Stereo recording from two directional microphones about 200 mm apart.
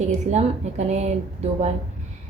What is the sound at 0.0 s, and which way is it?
A woman's voice, 35° right (ahead or behind).